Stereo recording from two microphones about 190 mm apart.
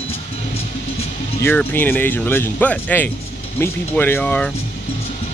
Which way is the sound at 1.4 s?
10° left (ahead or behind).